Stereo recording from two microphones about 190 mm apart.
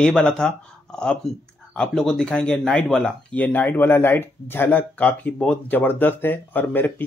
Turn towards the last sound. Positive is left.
turn(degrees=10)  # may be behind; listen again after turning